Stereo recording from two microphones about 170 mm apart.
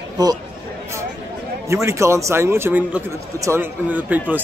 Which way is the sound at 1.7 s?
15° right (ahead or behind).